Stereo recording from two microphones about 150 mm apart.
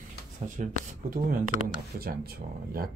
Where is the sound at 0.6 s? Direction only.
55° right (ahead or behind).